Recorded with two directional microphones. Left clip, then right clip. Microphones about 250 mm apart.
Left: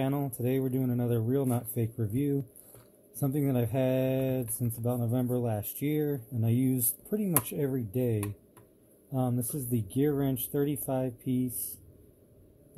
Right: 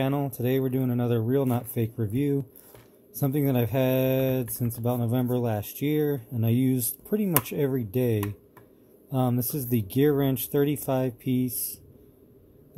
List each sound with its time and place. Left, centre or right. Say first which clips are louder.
0.0 s speech: right 4 dB; centre